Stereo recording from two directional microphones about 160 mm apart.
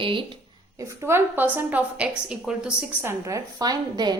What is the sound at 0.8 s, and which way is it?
Speech, 15° right (ahead or behind).